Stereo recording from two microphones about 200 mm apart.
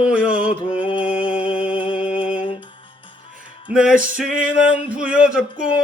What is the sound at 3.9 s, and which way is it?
Music, 45° right (ahead or behind).